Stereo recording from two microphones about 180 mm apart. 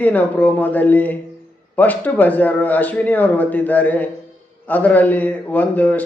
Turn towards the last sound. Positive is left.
turn(degrees=10)  # may be behind; listen again after turning